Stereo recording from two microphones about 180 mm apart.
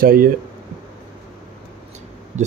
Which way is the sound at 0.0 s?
55° right (ahead or behind).